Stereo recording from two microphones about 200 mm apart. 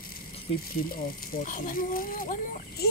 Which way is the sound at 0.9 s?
45° left (ahead or behind).